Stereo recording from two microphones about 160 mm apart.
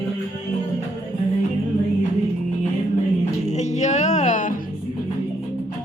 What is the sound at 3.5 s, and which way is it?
Music, 45° left (ahead or behind).